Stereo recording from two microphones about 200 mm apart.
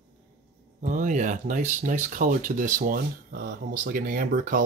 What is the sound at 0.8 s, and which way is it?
Speech, 40° right (ahead or behind).